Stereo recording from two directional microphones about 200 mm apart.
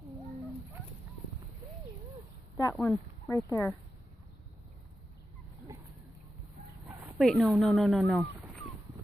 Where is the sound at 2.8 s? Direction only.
15° left (ahead or behind).